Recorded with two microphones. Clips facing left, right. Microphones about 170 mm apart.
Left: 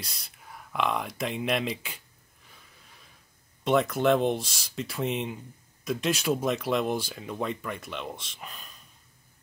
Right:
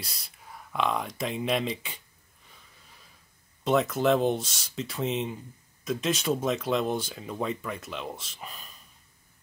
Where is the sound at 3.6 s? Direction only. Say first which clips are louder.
Left 1 dB; centre (ahead or behind).